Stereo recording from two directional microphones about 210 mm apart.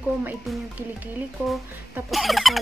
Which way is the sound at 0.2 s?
5° right (ahead or behind).